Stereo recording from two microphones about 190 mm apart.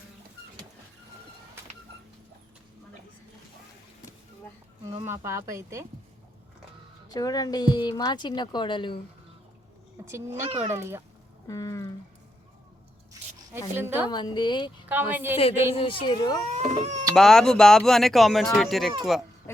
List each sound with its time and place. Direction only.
5.0 s speech: 15° right (ahead or behind)
7.1 s speech: 20° left (ahead or behind)
10.1 s speech: 15° right (ahead or behind)
11.4 s a sound: 15° left (ahead or behind)
13.7 s speech: 10° right (ahead or behind)
14.1 s speech: 20° left (ahead or behind)
15.1 s speech: 10° right (ahead or behind)
15.4 s speech: 30° left (ahead or behind)
16.4 s speech: 35° right (ahead or behind)
17.2 s speech: centre (ahead or behind)